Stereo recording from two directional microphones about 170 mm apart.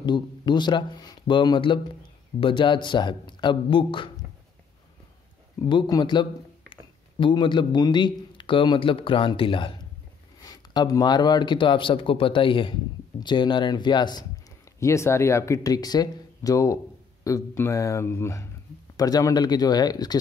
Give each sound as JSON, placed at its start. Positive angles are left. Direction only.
{"t": 0.0, "sound": "speech", "side_deg": 25}
{"t": 5.6, "sound": "speech", "side_deg": 25}